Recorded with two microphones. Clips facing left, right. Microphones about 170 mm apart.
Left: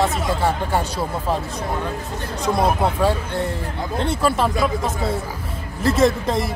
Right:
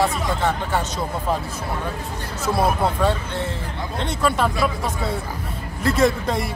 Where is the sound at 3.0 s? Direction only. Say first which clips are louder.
Left 2 dB; 10° left (ahead or behind).